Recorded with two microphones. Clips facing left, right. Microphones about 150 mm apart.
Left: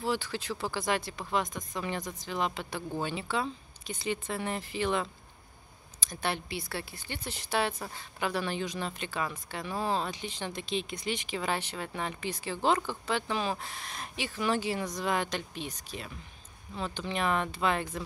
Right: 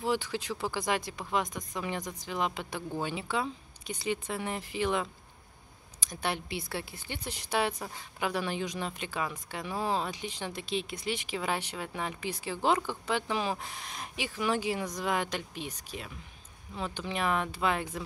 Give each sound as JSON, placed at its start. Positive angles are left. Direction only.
{"t": 0.0, "sound": "speech", "side_deg": -20}